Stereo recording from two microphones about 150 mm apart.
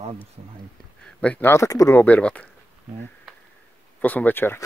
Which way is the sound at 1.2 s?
10° left (ahead or behind).